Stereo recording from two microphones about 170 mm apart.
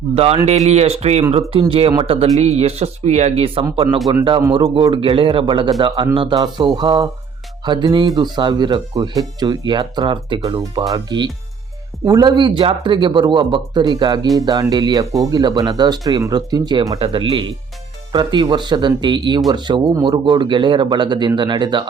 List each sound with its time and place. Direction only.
0.1 s speech: 35° right (ahead or behind)